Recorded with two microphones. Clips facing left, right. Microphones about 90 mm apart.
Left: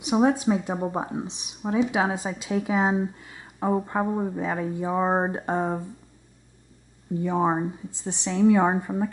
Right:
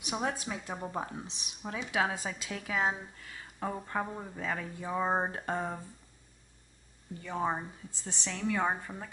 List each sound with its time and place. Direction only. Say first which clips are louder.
0.0 s speech: left 13 dB; 25° left (ahead or behind)
7.2 s speech: left 10 dB; 20° left (ahead or behind)
7.9 s speech: left 11 dB; 15° left (ahead or behind)